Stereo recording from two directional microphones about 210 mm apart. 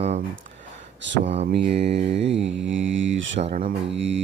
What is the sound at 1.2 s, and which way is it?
Mantra, 30° right (ahead or behind).